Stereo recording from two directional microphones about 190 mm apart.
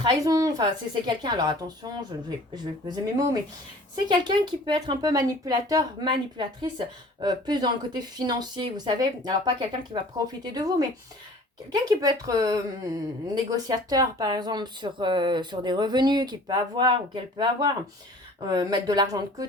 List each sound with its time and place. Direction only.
0.0 s speech: 20° right (ahead or behind)